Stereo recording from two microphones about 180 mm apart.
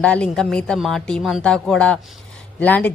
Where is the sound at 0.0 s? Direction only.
5° left (ahead or behind).